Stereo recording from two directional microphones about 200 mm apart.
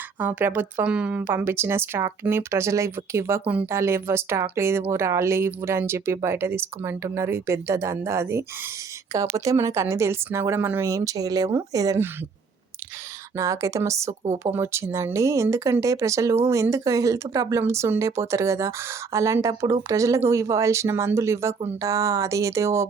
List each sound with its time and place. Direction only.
0.2 s speech: 10° right (ahead or behind)
13.3 s speech: 15° right (ahead or behind)